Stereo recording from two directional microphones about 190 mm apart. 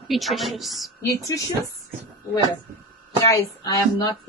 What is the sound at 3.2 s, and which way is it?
Speech, 20° left (ahead or behind).